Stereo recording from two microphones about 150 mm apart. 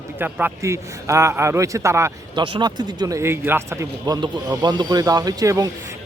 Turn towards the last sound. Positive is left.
turn(degrees=-25)  # may be behind; listen again after turning